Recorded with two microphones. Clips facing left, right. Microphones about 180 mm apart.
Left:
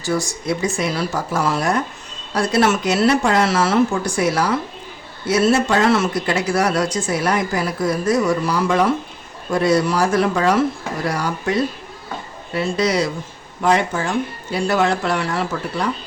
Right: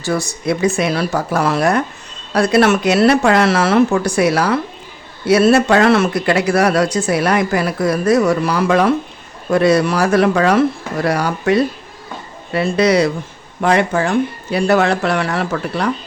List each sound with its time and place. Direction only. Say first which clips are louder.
0.0 s speech: right 3 dB; 65° right (ahead or behind)